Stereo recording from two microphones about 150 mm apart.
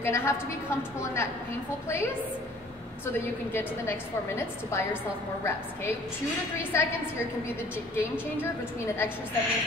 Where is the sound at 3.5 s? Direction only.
15° left (ahead or behind).